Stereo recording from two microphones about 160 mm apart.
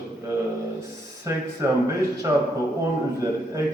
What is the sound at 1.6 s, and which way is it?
Speech, 20° right (ahead or behind).